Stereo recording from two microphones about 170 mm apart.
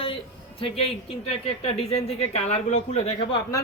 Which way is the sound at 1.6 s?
35° left (ahead or behind).